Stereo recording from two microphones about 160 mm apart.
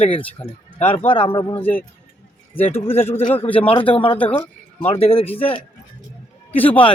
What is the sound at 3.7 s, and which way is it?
Speech, 30° left (ahead or behind).